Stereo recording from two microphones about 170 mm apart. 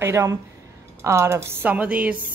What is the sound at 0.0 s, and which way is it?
Speech, 15° right (ahead or behind).